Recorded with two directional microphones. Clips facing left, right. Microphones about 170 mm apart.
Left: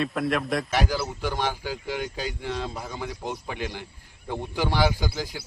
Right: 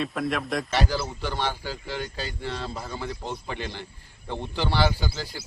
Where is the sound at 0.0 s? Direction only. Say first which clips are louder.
Left 2 dB; centre (ahead or behind).